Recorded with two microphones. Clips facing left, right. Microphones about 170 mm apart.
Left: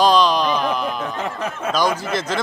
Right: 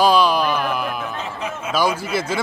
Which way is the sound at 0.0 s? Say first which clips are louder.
Even; 10° right (ahead or behind).